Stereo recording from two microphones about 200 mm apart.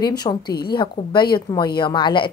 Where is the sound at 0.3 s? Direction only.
25° left (ahead or behind).